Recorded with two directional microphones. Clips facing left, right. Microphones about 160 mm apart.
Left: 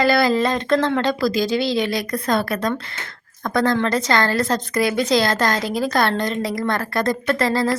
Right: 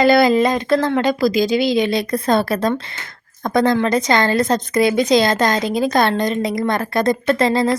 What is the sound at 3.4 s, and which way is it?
A woman's voice, 20° right (ahead or behind).